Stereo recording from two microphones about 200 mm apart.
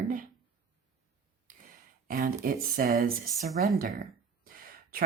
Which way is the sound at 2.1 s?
45° right (ahead or behind).